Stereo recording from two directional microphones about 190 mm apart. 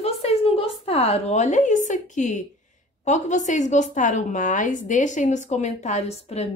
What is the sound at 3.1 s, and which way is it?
A woman's voice, 40° left (ahead or behind).